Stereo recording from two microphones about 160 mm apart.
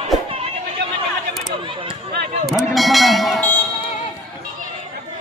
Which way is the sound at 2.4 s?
Centre (ahead or behind).